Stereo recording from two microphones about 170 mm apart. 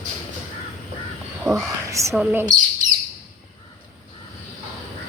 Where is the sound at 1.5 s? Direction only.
20° right (ahead or behind).